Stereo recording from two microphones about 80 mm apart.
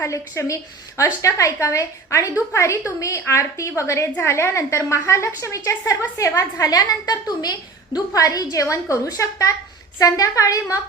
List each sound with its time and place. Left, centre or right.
0.0 s a woman's voice: left